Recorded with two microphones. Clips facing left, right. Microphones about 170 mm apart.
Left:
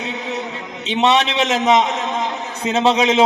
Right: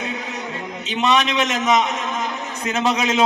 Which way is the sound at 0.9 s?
30° left (ahead or behind).